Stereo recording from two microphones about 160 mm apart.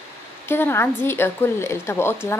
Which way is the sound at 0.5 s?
15° left (ahead or behind).